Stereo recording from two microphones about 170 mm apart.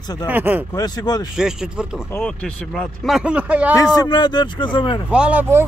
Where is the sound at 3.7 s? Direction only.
25° left (ahead or behind).